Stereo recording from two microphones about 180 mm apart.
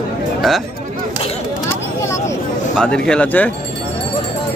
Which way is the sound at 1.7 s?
15° left (ahead or behind).